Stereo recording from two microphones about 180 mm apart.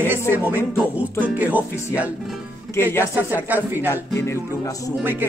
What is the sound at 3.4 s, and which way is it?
Music, 10° right (ahead or behind).